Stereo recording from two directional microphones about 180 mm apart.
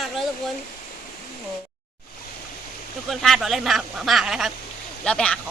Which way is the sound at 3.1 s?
Centre (ahead or behind).